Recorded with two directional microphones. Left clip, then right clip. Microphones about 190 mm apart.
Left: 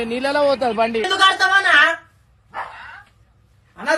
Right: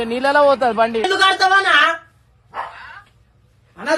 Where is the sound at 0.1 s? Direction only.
30° right (ahead or behind).